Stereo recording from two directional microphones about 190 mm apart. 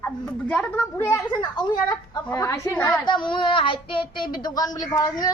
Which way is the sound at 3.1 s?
25° left (ahead or behind).